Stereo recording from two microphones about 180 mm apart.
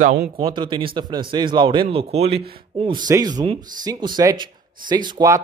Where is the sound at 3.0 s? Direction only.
20° right (ahead or behind).